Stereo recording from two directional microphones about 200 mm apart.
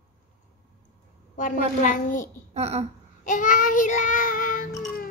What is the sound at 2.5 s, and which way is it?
Speech, 30° right (ahead or behind).